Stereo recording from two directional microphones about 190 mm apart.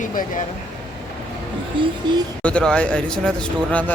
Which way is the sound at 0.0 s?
45° left (ahead or behind).